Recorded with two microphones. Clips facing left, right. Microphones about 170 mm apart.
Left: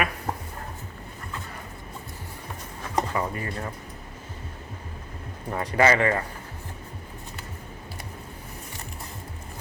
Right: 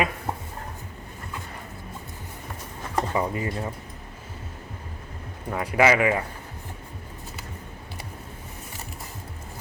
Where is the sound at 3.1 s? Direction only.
20° right (ahead or behind).